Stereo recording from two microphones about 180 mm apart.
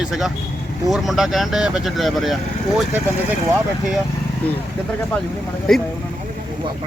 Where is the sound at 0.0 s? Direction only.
Centre (ahead or behind).